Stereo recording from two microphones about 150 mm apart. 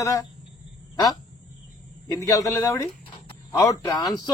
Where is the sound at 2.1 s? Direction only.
20° left (ahead or behind).